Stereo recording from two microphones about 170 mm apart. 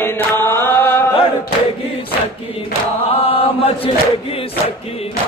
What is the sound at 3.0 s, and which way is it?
Chant, 35° left (ahead or behind).